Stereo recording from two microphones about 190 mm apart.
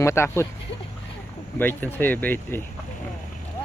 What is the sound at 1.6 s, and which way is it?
Speech, 10° left (ahead or behind).